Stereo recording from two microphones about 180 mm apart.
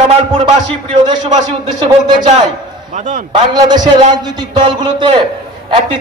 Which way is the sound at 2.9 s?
45° right (ahead or behind).